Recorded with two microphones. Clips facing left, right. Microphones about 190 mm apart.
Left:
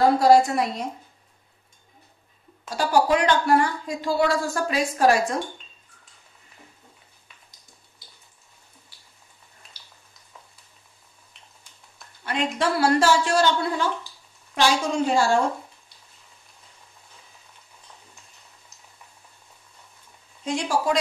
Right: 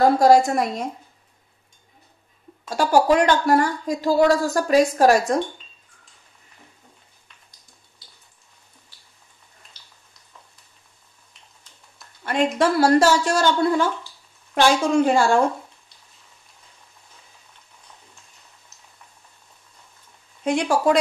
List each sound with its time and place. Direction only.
0.2 s speech: 45° right (ahead or behind)
2.7 s a woman's voice: 45° right (ahead or behind)
12.3 s a woman's voice: 45° right (ahead or behind)
20.4 s a woman's voice: 60° right (ahead or behind)